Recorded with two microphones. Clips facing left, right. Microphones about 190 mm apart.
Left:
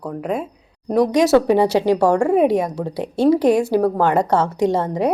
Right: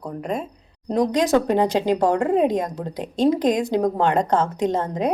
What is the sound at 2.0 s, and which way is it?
Speech, 70° left (ahead or behind).